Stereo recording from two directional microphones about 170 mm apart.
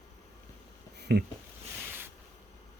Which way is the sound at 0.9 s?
75° right (ahead or behind).